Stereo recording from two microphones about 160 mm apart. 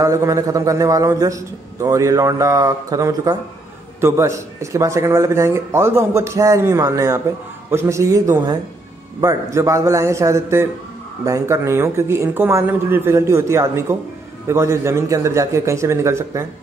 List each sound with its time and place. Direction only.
0.0 s a man's voice: 20° right (ahead or behind)